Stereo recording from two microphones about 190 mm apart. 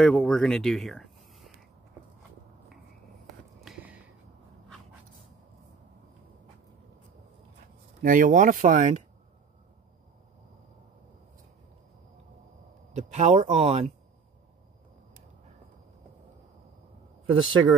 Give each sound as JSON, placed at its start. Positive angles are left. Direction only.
{"t": 0.0, "sound": "speech", "side_deg": 5}
{"t": 3.3, "sound": "a sound", "side_deg": -5}
{"t": 8.0, "sound": "speech", "side_deg": -45}
{"t": 12.9, "sound": "speech", "side_deg": -35}
{"t": 17.3, "sound": "speech", "side_deg": -25}